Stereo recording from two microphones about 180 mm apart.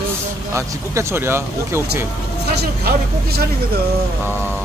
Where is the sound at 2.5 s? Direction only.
60° right (ahead or behind).